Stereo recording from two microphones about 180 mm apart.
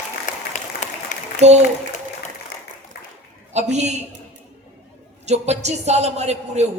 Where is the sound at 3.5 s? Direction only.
40° right (ahead or behind).